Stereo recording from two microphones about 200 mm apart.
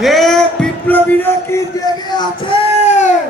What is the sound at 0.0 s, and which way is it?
Music, centre (ahead or behind).